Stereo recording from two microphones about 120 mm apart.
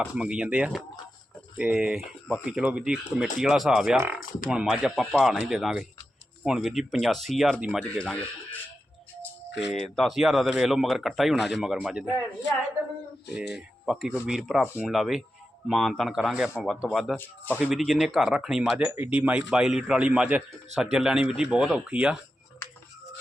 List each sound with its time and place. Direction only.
0.0 s speech: 5° right (ahead or behind); by 8.5 s 10° left (ahead or behind)
9.7 s speech: 5° left (ahead or behind)
13.3 s speech: 5° right (ahead or behind)
17.2 s speech: 15° left (ahead or behind)
17.6 s speech: 5° right (ahead or behind)